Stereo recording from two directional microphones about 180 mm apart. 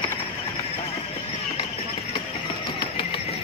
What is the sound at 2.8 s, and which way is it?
Music, 30° left (ahead or behind).